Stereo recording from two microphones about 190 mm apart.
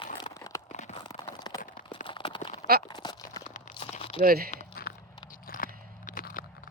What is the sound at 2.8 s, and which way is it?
Crumpling, 20° left (ahead or behind).